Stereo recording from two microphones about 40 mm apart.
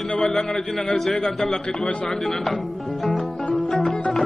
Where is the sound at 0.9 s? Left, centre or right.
Centre.